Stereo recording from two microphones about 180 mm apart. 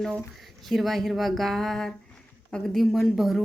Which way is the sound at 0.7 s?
Centre (ahead or behind).